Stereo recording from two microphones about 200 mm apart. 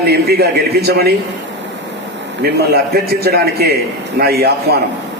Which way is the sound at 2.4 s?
50° right (ahead or behind).